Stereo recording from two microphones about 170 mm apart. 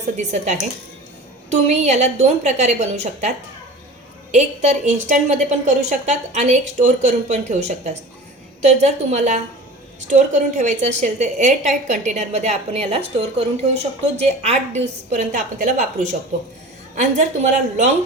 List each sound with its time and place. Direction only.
0.2 s a woman's voice: 45° right (ahead or behind)
1.7 s a woman's voice: 40° right (ahead or behind)